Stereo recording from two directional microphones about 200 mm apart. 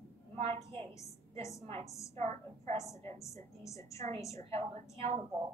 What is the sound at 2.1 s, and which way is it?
Speech, 35° right (ahead or behind).